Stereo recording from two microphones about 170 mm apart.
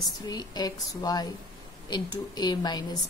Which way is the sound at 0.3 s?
25° left (ahead or behind).